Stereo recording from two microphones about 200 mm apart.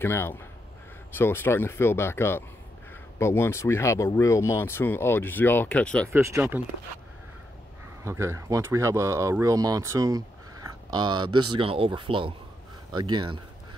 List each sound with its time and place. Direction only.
0.0 s speech: 10° left (ahead or behind)
6.0 s speech: 10° right (ahead or behind)
8.0 s speech: 15° right (ahead or behind)